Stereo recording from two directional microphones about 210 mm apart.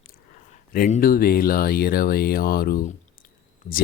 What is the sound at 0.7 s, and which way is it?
Speech, 40° left (ahead or behind).